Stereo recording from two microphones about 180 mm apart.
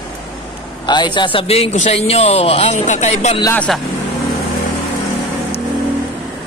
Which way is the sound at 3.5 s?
5° left (ahead or behind).